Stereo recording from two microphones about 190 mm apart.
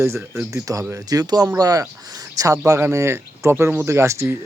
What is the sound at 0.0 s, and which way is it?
Speech, 15° right (ahead or behind).